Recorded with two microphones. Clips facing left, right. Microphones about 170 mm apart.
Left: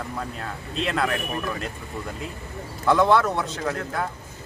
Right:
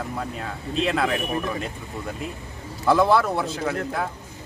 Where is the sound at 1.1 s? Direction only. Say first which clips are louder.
Right 2 dB; 20° right (ahead or behind).